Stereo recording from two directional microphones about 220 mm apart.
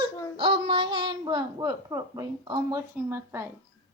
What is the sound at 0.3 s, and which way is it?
Speech, 20° right (ahead or behind).